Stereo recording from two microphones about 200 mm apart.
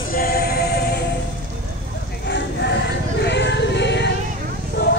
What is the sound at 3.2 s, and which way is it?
Music, 60° left (ahead or behind).